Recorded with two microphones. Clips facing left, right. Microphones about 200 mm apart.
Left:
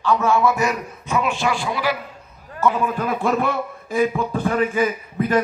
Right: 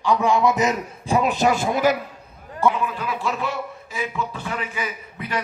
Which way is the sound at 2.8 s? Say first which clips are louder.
Left 4 dB; 50° left (ahead or behind).